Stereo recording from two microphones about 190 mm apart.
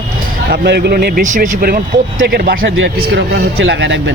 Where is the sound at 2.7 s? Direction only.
65° right (ahead or behind).